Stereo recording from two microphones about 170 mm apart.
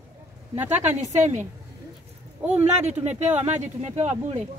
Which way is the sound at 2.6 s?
40° right (ahead or behind).